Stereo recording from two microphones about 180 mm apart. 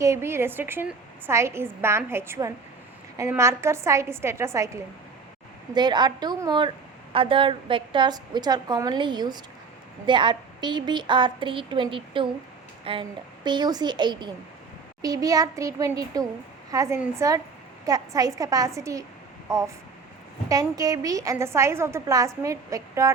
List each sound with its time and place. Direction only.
0.0 s a woman's voice: 15° right (ahead or behind)